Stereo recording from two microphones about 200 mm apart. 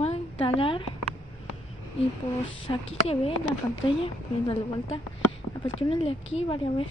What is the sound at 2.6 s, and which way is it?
A woman's voice, 30° left (ahead or behind).